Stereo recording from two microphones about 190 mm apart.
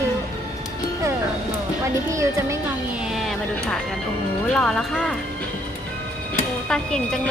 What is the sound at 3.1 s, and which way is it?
Speech, centre (ahead or behind).